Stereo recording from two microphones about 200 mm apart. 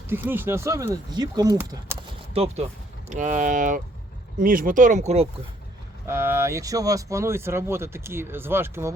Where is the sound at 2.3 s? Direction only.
30° right (ahead or behind).